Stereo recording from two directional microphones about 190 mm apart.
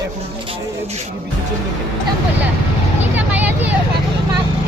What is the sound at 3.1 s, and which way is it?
Vehicle, 10° right (ahead or behind).